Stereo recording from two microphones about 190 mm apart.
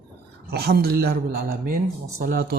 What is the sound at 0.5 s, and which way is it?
Speech, 55° right (ahead or behind).